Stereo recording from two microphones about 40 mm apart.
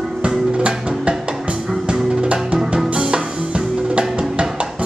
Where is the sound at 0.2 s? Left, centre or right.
Right.